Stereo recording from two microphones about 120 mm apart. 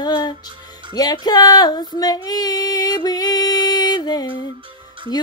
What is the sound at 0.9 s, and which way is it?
Female singing, 35° left (ahead or behind).